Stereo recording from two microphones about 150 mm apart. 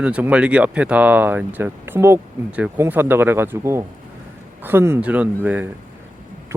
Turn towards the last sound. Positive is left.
turn(degrees=-10)  # may be behind; listen again after turning